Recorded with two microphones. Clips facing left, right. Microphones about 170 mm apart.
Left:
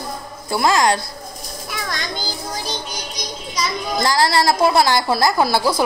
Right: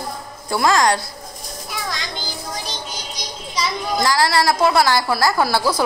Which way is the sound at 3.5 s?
45° left (ahead or behind).